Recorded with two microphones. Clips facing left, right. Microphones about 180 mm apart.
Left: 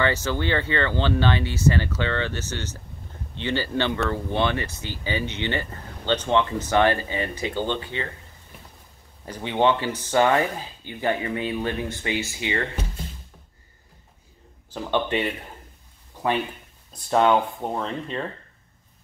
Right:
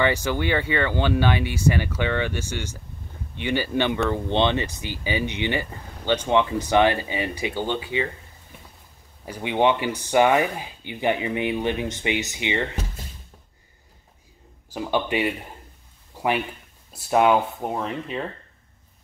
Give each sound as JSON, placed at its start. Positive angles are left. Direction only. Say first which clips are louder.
{"t": 0.0, "sound": "speech", "louder": "right 1 dB", "side_deg": -15}
{"t": 9.2, "sound": "speech", "louder": "right 1 dB", "side_deg": -10}
{"t": 14.7, "sound": "speech", "louder": "even", "side_deg": -10}